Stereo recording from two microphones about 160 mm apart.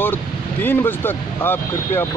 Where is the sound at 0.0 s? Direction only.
10° left (ahead or behind).